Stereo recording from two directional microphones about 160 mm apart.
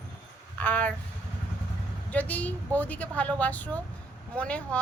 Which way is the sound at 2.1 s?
10° left (ahead or behind).